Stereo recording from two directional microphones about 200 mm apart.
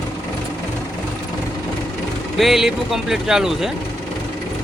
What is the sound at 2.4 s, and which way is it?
Speech, centre (ahead or behind).